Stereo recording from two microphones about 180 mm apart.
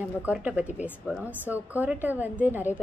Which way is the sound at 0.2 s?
10° right (ahead or behind).